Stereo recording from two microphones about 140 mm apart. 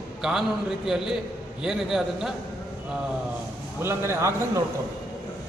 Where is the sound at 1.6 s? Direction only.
5° right (ahead or behind).